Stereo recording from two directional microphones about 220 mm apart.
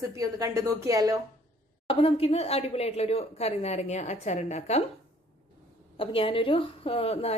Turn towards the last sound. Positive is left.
turn(degrees=30)  # may be behind; listen again after turning